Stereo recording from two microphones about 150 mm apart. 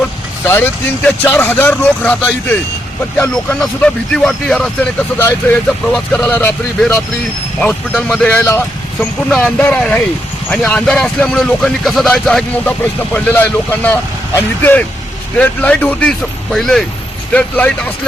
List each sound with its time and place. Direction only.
0.4 s speech: 15° left (ahead or behind)